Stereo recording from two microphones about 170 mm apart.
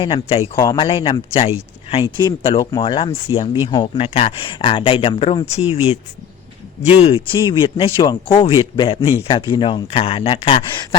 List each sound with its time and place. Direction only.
0.0 s speech: 35° left (ahead or behind)
7.0 s speech: 30° left (ahead or behind)